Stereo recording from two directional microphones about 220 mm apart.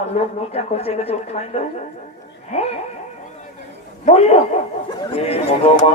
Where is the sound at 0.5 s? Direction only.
25° left (ahead or behind).